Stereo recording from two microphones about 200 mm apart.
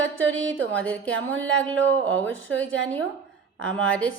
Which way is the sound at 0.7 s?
5° left (ahead or behind).